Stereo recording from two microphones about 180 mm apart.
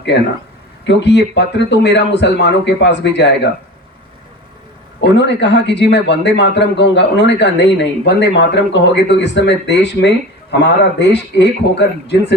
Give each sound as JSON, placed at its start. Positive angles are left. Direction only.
{"t": 0.9, "sound": "a man's voice", "side_deg": 70}
{"t": 4.9, "sound": "a man's voice", "side_deg": 75}